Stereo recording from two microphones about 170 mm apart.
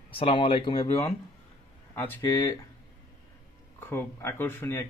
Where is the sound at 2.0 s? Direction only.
10° left (ahead or behind).